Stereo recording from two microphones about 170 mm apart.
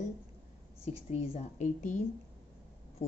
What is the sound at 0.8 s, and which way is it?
A woman's voice, 35° left (ahead or behind).